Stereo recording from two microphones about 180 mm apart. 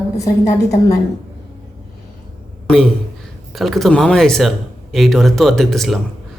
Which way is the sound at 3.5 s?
Centre (ahead or behind).